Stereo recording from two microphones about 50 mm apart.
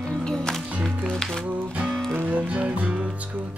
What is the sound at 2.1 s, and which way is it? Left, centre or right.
Music, right.